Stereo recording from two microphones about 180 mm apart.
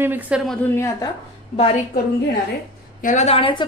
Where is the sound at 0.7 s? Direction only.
15° left (ahead or behind).